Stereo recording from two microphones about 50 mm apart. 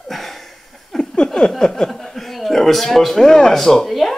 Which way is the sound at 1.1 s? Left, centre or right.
Centre.